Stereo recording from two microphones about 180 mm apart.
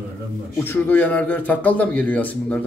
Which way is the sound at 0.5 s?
10° left (ahead or behind).